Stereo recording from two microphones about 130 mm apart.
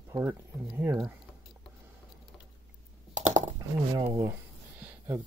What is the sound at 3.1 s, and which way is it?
Typing, 70° right (ahead or behind).